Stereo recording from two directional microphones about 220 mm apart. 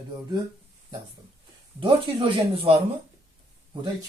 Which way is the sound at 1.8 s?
25° right (ahead or behind).